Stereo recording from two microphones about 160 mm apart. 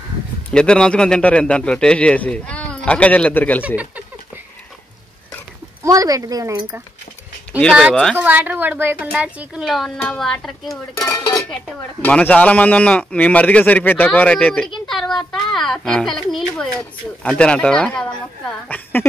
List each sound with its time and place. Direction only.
0.5 s a man's voice: 5° left (ahead or behind)
3.6 s speech: 10° right (ahead or behind)
5.9 s speech: 20° right (ahead or behind)
7.5 s speech: 10° right (ahead or behind)
7.9 s a child's voice: 5° left (ahead or behind)
8.2 s speech: 10° right (ahead or behind)
11.0 s a man's voice: 20° left (ahead or behind)